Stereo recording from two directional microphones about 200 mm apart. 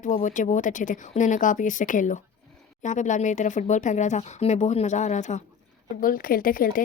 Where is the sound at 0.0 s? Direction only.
40° left (ahead or behind).